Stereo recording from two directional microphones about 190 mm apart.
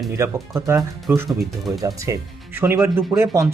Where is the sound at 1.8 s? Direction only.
15° right (ahead or behind).